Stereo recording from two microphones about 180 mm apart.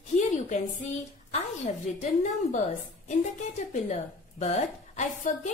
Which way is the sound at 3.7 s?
40° left (ahead or behind).